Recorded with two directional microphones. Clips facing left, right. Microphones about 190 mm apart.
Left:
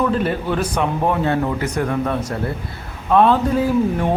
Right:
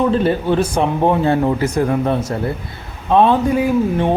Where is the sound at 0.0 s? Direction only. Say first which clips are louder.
Right 4 dB; 30° right (ahead or behind).